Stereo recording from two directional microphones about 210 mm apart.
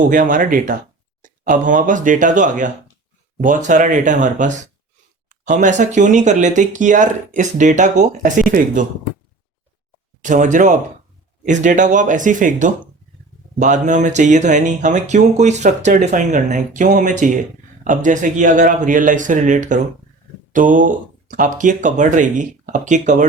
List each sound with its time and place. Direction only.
0.0 s speech: 40° right (ahead or behind)
10.2 s speech: 35° right (ahead or behind)